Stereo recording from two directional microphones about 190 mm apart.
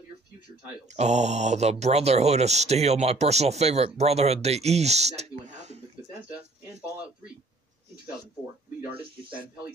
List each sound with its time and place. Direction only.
0.9 s speech: 35° right (ahead or behind)